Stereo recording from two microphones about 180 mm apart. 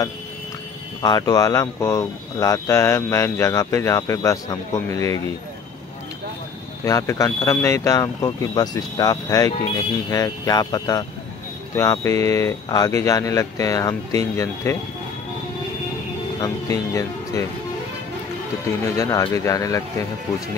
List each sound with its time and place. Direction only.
1.0 s speech: 20° left (ahead or behind)
6.8 s speech: 15° left (ahead or behind)
16.3 s speech: 20° left (ahead or behind)
18.9 s speech: 20° left (ahead or behind)